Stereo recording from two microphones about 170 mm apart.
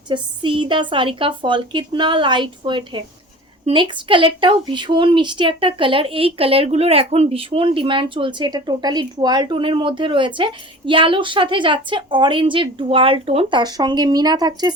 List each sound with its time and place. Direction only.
0.1 s a woman's voice: 30° right (ahead or behind)